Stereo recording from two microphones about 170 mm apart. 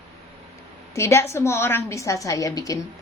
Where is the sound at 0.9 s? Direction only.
15° left (ahead or behind).